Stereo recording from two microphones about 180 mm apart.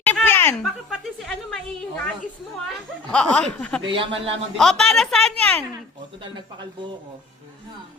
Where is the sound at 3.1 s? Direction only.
5° left (ahead or behind).